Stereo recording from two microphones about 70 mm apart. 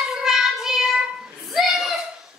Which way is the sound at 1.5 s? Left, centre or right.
Centre.